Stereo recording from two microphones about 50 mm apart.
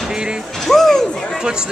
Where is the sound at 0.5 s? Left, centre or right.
Centre.